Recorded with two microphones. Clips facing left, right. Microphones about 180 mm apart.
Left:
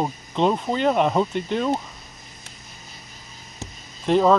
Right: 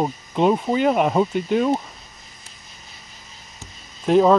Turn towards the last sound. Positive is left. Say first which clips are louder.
# right 2 dB
turn(degrees=-5)  # may be behind; listen again after turning